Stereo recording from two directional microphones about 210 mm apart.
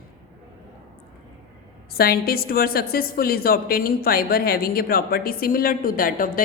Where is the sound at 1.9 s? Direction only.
45° left (ahead or behind).